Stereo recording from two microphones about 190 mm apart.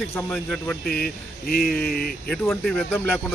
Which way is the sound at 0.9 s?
50° left (ahead or behind).